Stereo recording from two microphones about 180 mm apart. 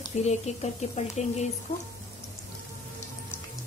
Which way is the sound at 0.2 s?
40° left (ahead or behind).